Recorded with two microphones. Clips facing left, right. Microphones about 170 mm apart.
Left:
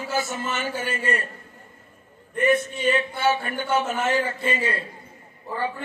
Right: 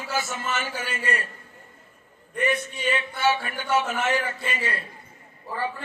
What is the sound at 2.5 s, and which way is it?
A man's voice, 40° left (ahead or behind).